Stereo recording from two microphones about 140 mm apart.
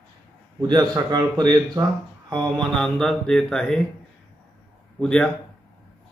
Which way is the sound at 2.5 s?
5° left (ahead or behind).